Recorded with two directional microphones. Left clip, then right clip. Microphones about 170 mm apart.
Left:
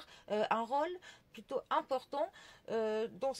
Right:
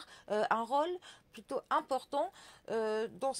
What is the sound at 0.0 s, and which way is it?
Speech, 30° right (ahead or behind).